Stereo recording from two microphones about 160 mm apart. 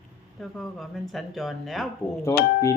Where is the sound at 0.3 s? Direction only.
Centre (ahead or behind).